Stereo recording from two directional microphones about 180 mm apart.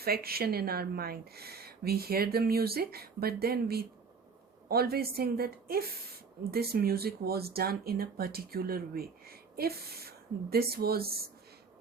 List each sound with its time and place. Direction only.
0.0 s speech: 55° right (ahead or behind)